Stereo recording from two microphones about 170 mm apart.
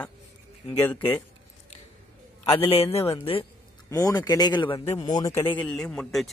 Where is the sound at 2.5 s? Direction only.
35° left (ahead or behind).